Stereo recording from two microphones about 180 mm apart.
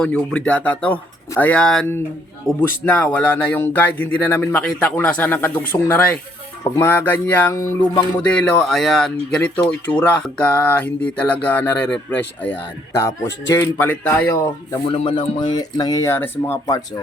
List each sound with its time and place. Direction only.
0.0 s speech: 5° left (ahead or behind)
8.2 s speech: 5° left (ahead or behind)
15.0 s speech: 25° left (ahead or behind)